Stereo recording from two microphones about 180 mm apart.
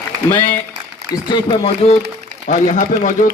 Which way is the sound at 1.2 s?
25° left (ahead or behind).